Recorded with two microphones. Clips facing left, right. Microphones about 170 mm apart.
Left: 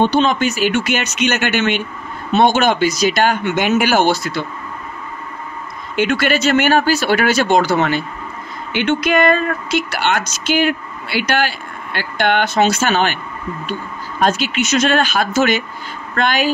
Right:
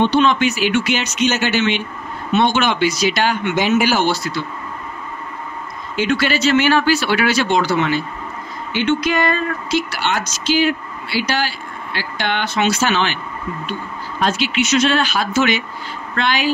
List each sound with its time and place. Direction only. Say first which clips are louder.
0.0 s speech: even; 40° left (ahead or behind)
2.3 s speech: left 3 dB; 45° left (ahead or behind)
5.9 s speech: left 2 dB; 50° left (ahead or behind)
14.2 s speech: left 2 dB; 45° left (ahead or behind)